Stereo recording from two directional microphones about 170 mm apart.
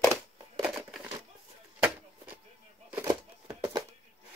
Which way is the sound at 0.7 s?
Centre (ahead or behind).